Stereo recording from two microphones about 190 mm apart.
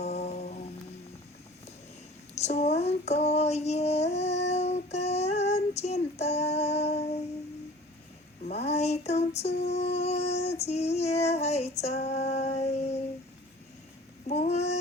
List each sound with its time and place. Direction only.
0.0 s music: 35° left (ahead or behind)
2.3 s child singing: 35° left (ahead or behind)
8.4 s a sound: 35° left (ahead or behind)
9.6 s music: 35° left (ahead or behind)
9.9 s female singing: 35° left (ahead or behind)
14.3 s a sound: 35° left (ahead or behind)